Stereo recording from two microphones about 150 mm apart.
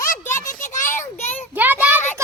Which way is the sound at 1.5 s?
10° right (ahead or behind).